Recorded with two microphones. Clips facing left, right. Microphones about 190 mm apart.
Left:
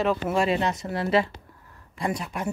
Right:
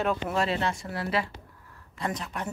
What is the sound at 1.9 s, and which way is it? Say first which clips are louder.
Speech: left 4 dB; 10° left (ahead or behind).